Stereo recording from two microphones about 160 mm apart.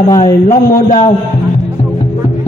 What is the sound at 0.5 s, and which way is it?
Speech, 55° left (ahead or behind).